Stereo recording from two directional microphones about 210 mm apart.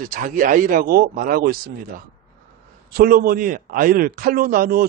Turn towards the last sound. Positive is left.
turn(degrees=-40)  # may be behind; listen again after turning